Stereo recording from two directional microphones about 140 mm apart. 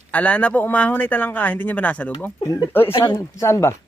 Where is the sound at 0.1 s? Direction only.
10° left (ahead or behind).